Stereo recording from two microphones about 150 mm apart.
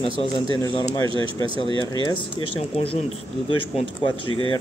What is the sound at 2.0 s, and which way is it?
Speech, 35° left (ahead or behind).